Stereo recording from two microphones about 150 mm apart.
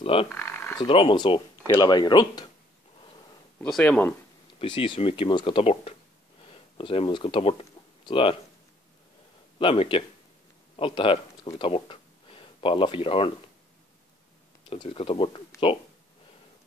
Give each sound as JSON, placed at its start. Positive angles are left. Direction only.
{"t": 0.0, "sound": "speech", "side_deg": 40}
{"t": 0.3, "sound": "a sound", "side_deg": 15}
{"t": 0.7, "sound": "speech", "side_deg": 35}
{"t": 3.6, "sound": "speech", "side_deg": 5}
{"t": 4.6, "sound": "speech", "side_deg": 35}
{"t": 9.6, "sound": "speech", "side_deg": 35}
{"t": 14.7, "sound": "speech", "side_deg": 40}